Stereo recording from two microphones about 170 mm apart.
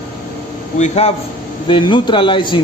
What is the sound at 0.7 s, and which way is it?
Speech, 40° left (ahead or behind).